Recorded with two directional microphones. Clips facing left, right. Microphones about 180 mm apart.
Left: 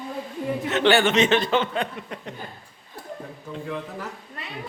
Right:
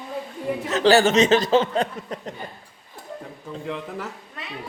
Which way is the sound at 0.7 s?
40° right (ahead or behind).